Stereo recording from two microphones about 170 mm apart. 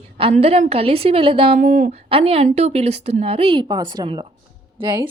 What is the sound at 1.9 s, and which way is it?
A woman's voice, 35° right (ahead or behind).